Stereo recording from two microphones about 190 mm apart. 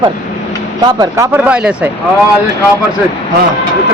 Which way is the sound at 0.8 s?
20° right (ahead or behind).